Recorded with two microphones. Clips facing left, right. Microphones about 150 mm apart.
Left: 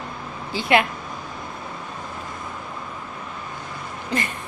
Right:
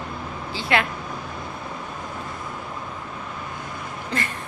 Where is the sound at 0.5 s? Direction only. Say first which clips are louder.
Left 4 dB; 15° left (ahead or behind).